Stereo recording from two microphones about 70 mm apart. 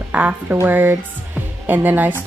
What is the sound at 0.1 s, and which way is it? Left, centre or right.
A woman's voice, right.